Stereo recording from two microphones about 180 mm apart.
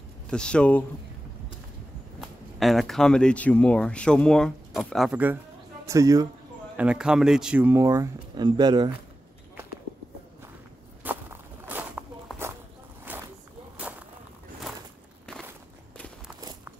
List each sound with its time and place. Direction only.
0.3 s speech: 5° left (ahead or behind)
2.1 s a man's voice: centre (ahead or behind); by 6.2 s 20° right (ahead or behind)
6.8 s speech: 5° right (ahead or behind); by 8.9 s 25° right (ahead or behind)
11.1 s walk: 10° right (ahead or behind)
13.0 s a sound: 10° right (ahead or behind)